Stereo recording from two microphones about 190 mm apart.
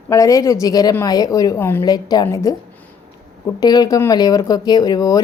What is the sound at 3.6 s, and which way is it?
A woman's voice, 20° left (ahead or behind).